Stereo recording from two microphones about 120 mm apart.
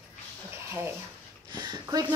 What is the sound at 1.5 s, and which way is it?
Speech, 35° right (ahead or behind).